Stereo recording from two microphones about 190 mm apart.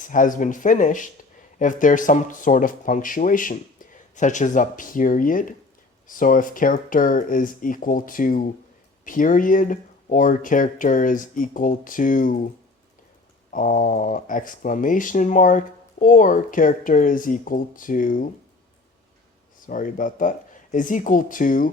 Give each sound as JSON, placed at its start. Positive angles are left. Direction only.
{"t": 0.0, "sound": "speech", "side_deg": 45}
{"t": 13.5, "sound": "speech", "side_deg": 45}
{"t": 19.6, "sound": "speech", "side_deg": 45}